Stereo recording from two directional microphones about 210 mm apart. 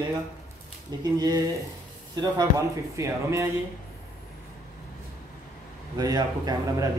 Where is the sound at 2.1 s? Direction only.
20° right (ahead or behind).